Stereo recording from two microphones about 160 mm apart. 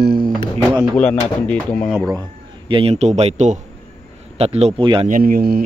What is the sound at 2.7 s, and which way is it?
A man's voice, 35° right (ahead or behind).